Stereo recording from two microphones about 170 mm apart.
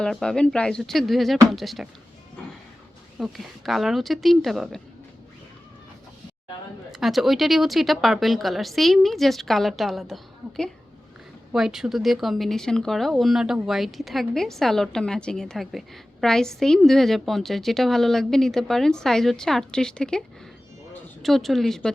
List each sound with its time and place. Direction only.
0.0 s speech: 5° left (ahead or behind)
3.2 s speech: centre (ahead or behind)
6.9 s speech: centre (ahead or behind)
11.5 s speech: 5° right (ahead or behind)